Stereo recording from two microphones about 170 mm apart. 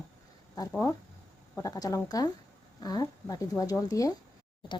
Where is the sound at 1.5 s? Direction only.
20° left (ahead or behind).